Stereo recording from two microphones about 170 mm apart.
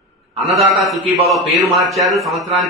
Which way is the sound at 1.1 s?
Centre (ahead or behind).